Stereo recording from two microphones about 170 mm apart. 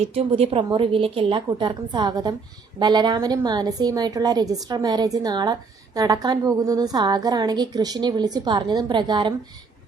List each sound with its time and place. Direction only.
0.0 s a woman's voice: 35° right (ahead or behind)